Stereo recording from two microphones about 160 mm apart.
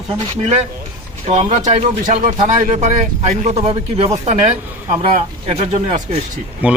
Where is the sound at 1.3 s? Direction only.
40° right (ahead or behind).